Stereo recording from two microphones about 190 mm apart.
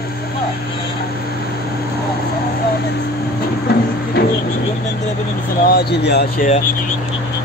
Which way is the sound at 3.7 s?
60° left (ahead or behind).